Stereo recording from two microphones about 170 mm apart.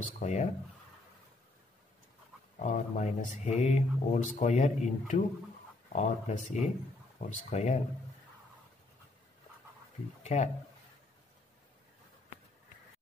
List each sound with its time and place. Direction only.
0.2 s speech: 45° left (ahead or behind)
2.6 s speech: 45° left (ahead or behind)
10.2 s speech: 40° left (ahead or behind)